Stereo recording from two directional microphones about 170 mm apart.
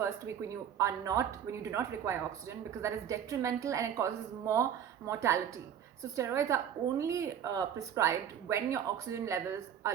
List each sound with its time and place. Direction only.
0.0 s speech: 15° right (ahead or behind)